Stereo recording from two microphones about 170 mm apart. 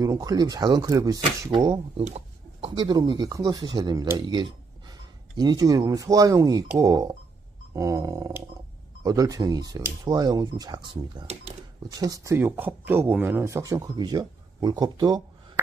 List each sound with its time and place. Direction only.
0.0 s speech: 20° right (ahead or behind)
2.0 s a sound: 40° right (ahead or behind)
2.7 s speech: 25° right (ahead or behind)